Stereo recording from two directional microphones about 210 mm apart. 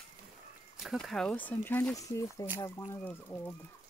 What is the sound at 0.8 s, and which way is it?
Speech, centre (ahead or behind).